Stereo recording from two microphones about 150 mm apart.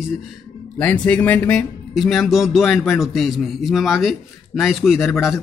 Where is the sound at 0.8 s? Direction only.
10° left (ahead or behind).